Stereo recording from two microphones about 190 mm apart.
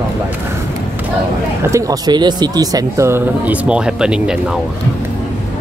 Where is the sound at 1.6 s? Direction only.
15° right (ahead or behind).